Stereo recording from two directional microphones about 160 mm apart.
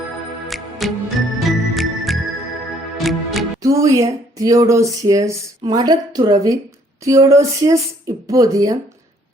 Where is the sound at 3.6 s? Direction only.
20° right (ahead or behind).